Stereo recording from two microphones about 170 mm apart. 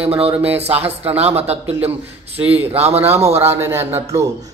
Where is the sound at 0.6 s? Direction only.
35° right (ahead or behind).